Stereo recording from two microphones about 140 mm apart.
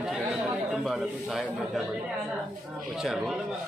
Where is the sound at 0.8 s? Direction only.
Centre (ahead or behind).